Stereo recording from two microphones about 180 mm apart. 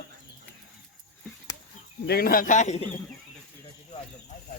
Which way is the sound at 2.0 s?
55° left (ahead or behind).